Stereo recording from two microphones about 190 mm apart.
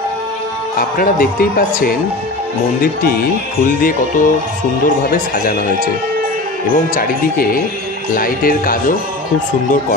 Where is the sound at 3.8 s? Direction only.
45° left (ahead or behind).